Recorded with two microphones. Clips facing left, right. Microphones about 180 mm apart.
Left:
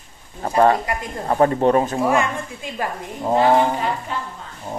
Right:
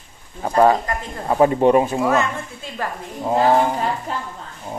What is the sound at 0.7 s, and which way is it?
Speech, 10° left (ahead or behind).